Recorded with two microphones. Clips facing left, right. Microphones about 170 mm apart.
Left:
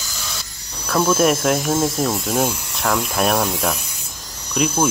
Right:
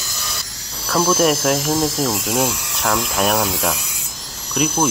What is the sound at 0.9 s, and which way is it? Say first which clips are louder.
Speech: even; 5° right (ahead or behind).